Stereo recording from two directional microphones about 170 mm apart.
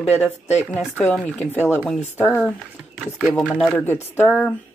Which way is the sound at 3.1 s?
5° right (ahead or behind).